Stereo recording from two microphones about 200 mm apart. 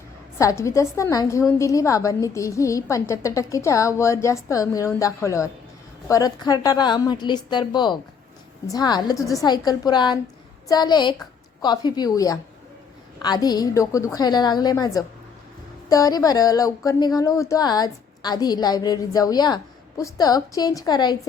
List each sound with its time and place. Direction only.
0.3 s a woman's voice: 15° left (ahead or behind)